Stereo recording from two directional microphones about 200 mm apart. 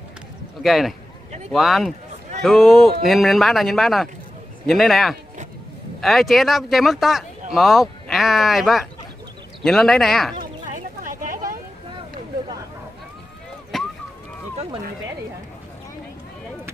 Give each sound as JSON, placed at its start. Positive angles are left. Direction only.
{"t": 0.6, "sound": "speech", "side_deg": 0}
{"t": 10.7, "sound": "a sound", "side_deg": -40}
{"t": 13.7, "sound": "run", "side_deg": 0}